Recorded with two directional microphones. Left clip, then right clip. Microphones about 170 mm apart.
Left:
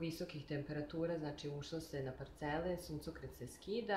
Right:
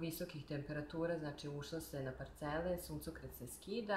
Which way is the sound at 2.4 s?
10° left (ahead or behind).